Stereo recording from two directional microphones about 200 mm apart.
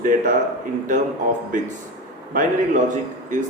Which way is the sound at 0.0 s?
40° right (ahead or behind).